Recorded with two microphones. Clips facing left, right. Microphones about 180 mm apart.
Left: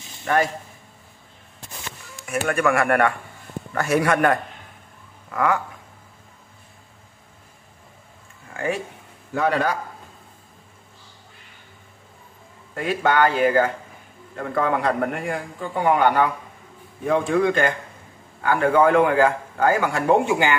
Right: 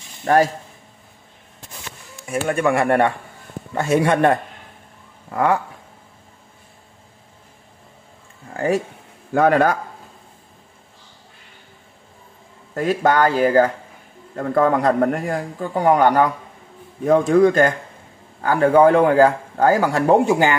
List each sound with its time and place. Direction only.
0.2 s speech: 40° right (ahead or behind)
2.4 s a man's voice: 25° right (ahead or behind)
8.5 s a man's voice: 40° right (ahead or behind)
9.3 s speech: 50° right (ahead or behind)
12.7 s a man's voice: 40° right (ahead or behind)